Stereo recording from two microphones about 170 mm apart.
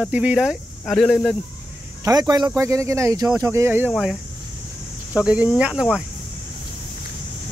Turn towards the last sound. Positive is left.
turn(degrees=-5)  # may be behind; listen again after turning